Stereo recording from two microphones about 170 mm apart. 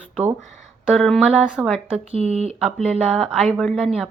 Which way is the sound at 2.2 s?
40° right (ahead or behind).